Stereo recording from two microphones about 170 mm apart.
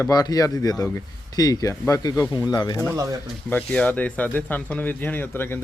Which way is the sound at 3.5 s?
10° left (ahead or behind).